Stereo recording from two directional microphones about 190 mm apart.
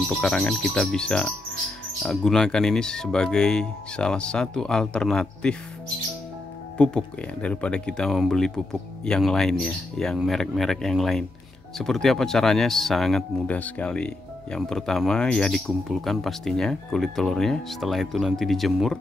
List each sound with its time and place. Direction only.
0.1 s speech: centre (ahead or behind)
6.8 s speech: 5° left (ahead or behind)